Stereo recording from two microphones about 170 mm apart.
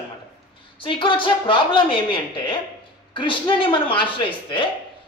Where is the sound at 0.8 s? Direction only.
30° left (ahead or behind).